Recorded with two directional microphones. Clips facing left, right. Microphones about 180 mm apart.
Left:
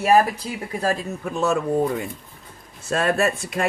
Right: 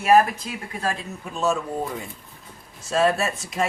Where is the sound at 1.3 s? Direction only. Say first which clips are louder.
Left 3 dB; 60° left (ahead or behind).